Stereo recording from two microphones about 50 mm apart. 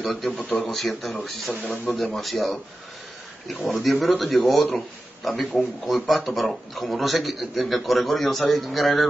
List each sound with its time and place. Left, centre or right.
0.0 s a man's voice: centre